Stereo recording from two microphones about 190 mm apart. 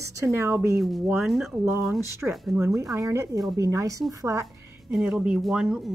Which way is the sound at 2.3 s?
Centre (ahead or behind).